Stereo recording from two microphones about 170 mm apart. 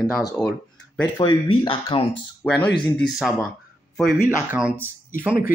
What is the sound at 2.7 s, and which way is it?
Speech, 25° left (ahead or behind).